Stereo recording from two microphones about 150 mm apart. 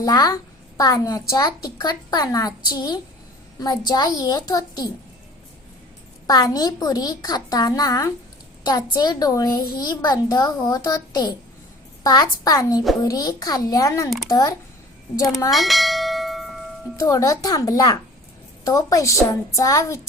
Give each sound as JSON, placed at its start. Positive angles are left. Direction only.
{"t": 0.0, "sound": "a child's voice", "side_deg": 25}
{"t": 6.2, "sound": "a child's voice", "side_deg": 25}
{"t": 15.4, "sound": "bell", "side_deg": 0}
{"t": 17.0, "sound": "a child's voice", "side_deg": 20}